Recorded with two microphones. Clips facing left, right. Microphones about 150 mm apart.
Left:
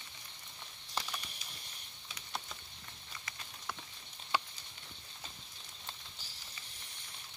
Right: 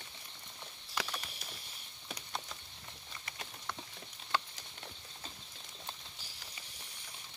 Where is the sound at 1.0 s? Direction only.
30° left (ahead or behind).